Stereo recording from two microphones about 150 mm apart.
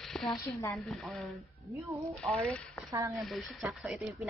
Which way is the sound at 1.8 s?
20° right (ahead or behind).